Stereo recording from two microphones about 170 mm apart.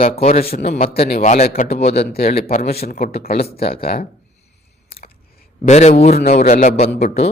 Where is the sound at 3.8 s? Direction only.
60° left (ahead or behind).